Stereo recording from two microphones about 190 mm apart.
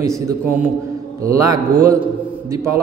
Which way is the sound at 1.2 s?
15° right (ahead or behind).